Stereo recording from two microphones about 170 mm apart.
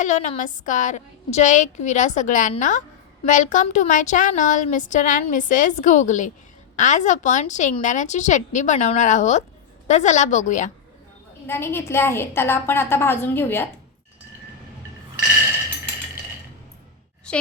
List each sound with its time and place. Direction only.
0.0 s a woman's voice: 45° left (ahead or behind)
11.4 s a woman's voice: 15° left (ahead or behind)